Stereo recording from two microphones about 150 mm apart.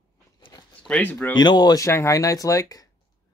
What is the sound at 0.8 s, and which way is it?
Speech, 10° left (ahead or behind).